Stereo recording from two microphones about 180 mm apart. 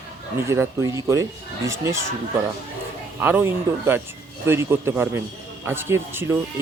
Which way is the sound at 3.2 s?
10° right (ahead or behind).